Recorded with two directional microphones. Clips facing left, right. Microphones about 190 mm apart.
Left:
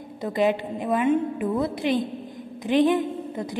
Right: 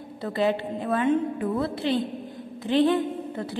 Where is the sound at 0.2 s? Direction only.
15° left (ahead or behind).